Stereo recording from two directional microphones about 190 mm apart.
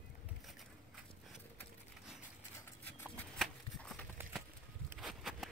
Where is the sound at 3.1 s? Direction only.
5° left (ahead or behind).